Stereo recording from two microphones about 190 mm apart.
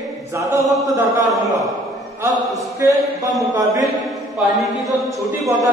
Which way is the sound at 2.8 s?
15° right (ahead or behind).